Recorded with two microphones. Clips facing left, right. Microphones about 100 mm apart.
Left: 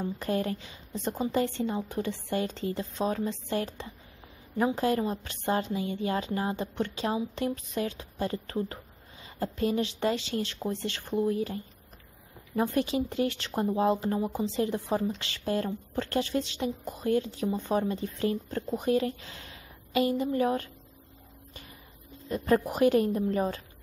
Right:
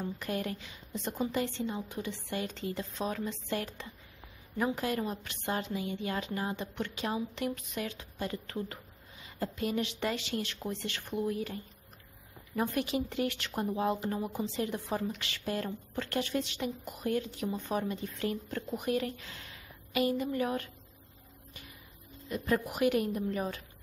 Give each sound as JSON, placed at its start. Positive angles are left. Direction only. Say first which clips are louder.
{"t": 0.2, "sound": "speech", "louder": "left 5 dB", "side_deg": 35}
{"t": 22.3, "sound": "speech", "louder": "left 6 dB", "side_deg": 35}